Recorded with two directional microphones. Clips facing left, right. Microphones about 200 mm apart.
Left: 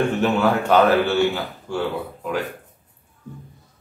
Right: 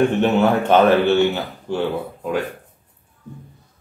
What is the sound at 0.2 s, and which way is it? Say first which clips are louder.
A man's voice: right 3 dB; 20° right (ahead or behind).